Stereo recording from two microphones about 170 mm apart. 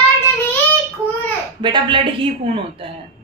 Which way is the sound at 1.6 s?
30° right (ahead or behind).